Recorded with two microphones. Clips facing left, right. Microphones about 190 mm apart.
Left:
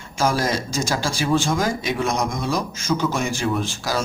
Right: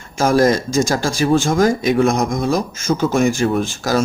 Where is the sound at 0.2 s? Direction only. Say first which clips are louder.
Right 7 dB; 50° right (ahead or behind).